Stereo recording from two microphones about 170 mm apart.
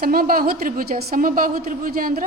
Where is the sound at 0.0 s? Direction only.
60° right (ahead or behind).